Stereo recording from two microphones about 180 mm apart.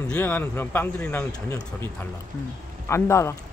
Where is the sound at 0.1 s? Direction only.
10° left (ahead or behind).